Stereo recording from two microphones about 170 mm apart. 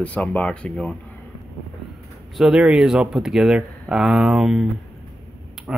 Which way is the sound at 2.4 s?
5° right (ahead or behind).